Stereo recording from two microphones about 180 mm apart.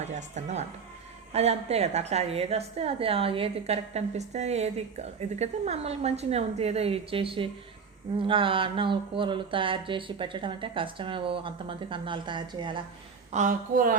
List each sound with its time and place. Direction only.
0.0 s a woman's voice: 40° right (ahead or behind)
13.3 s a woman's voice: 45° right (ahead or behind)